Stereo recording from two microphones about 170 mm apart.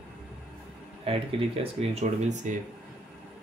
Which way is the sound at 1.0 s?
35° right (ahead or behind).